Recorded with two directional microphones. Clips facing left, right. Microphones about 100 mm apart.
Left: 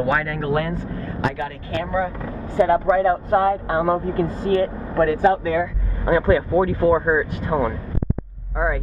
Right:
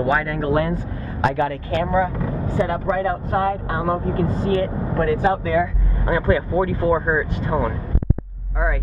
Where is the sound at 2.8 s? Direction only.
30° left (ahead or behind).